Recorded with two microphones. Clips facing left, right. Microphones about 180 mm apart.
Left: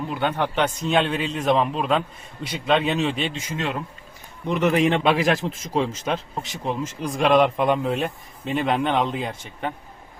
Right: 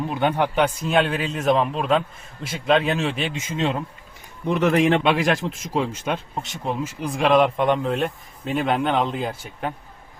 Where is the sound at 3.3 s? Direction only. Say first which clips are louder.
Right 3 dB; 20° right (ahead or behind).